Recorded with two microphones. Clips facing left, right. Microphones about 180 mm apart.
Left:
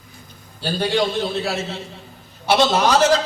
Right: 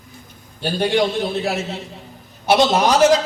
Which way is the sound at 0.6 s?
15° right (ahead or behind).